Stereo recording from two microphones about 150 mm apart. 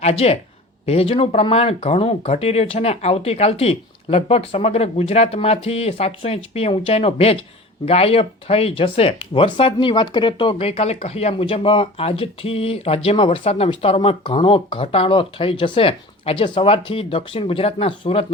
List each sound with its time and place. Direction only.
0.0 s speech: 45° left (ahead or behind)